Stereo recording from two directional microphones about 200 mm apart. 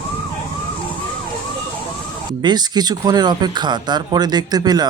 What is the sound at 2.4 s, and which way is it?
Speech, 20° right (ahead or behind).